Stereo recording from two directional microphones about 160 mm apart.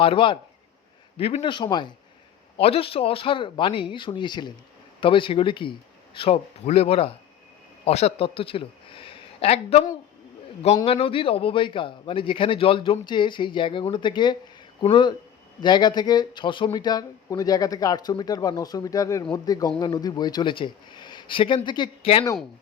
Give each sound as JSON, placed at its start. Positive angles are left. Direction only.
{"t": 0.0, "sound": "a man's voice", "side_deg": 35}
{"t": 10.8, "sound": "a man's voice", "side_deg": 35}